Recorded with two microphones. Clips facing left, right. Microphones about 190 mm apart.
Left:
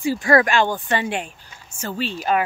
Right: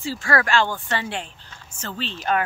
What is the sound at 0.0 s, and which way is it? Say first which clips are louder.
Speech: left 6 dB; 15° left (ahead or behind).